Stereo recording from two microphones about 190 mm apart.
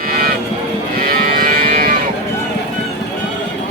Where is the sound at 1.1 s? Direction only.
50° right (ahead or behind).